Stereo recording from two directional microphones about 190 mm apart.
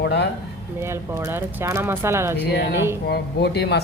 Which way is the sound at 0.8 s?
15° right (ahead or behind).